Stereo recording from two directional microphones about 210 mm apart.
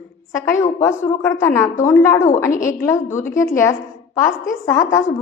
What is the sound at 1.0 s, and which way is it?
A woman's voice, 10° left (ahead or behind).